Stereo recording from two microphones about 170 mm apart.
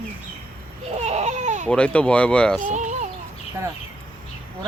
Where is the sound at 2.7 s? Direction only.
45° right (ahead or behind).